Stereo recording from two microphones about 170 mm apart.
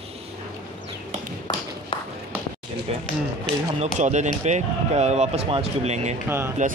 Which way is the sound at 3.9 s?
45° right (ahead or behind).